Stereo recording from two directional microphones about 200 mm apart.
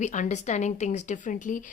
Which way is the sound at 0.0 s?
35° left (ahead or behind).